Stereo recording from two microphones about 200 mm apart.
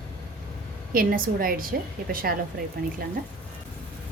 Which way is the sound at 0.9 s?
45° right (ahead or behind).